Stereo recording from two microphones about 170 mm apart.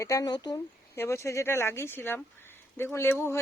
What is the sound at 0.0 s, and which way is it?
Speech, 20° left (ahead or behind).